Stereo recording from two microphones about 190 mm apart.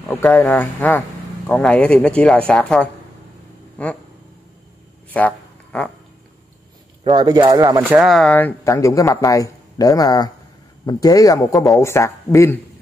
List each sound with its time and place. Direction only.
0.1 s speech: 15° left (ahead or behind)
5.1 s a sound: 10° left (ahead or behind)
7.1 s speech: 25° right (ahead or behind); by 12.5 s 15° left (ahead or behind)